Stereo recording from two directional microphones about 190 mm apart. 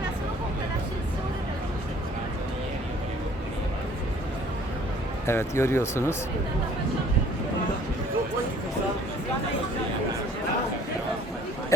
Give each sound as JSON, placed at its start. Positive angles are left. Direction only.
{"t": 5.2, "sound": "speech", "side_deg": 15}